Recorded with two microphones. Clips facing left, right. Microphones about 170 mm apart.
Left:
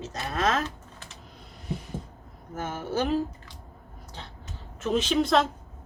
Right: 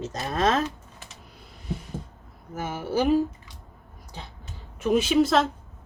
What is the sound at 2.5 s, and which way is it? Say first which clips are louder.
Speech: right 3 dB; 10° right (ahead or behind).